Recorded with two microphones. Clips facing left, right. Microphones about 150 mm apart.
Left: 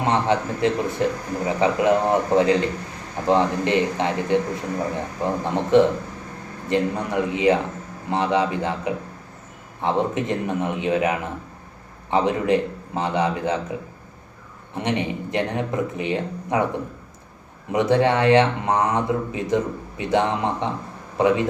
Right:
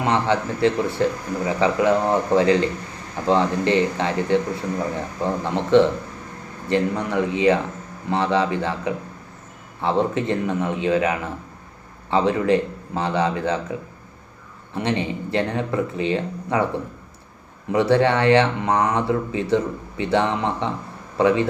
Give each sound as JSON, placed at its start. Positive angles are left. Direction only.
{"t": 0.0, "sound": "speech", "side_deg": 20}
{"t": 14.8, "sound": "speech", "side_deg": 15}
{"t": 17.7, "sound": "speech", "side_deg": 15}